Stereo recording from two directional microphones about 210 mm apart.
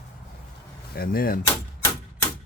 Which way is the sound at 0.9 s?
45° left (ahead or behind).